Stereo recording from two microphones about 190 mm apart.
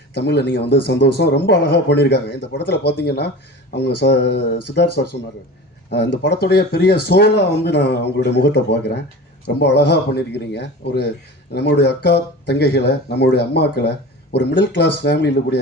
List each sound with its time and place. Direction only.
0.1 s a man's voice: 60° left (ahead or behind)